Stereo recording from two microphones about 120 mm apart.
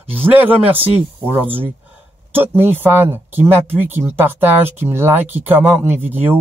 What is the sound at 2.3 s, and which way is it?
Speech, 15° right (ahead or behind).